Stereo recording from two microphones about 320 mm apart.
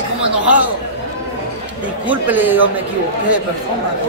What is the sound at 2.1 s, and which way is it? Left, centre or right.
Speech, centre.